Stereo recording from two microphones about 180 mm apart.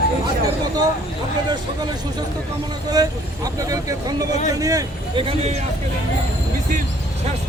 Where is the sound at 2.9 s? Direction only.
20° right (ahead or behind).